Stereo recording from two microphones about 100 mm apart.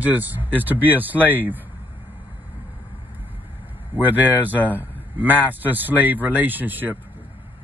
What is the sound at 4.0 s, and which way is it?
Speech, 20° right (ahead or behind).